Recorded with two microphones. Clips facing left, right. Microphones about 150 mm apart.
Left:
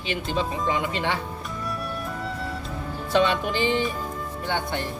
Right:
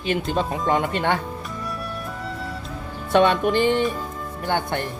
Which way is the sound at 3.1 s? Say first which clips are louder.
Right 5 dB; 50° right (ahead or behind).